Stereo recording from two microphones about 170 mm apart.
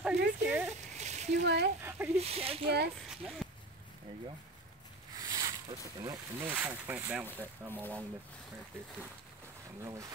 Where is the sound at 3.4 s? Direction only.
Centre (ahead or behind).